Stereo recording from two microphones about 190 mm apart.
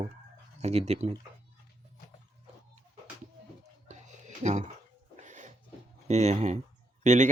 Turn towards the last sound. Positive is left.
turn(degrees=-40)  # may be behind; listen again after turning